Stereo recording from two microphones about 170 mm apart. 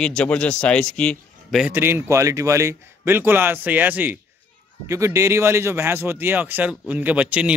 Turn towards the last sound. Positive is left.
turn(degrees=-5)  # may be behind; listen again after turning